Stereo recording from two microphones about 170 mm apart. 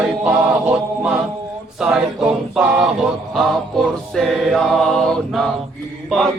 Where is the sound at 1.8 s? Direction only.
5° right (ahead or behind).